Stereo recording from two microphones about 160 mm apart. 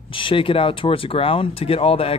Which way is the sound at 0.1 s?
35° left (ahead or behind).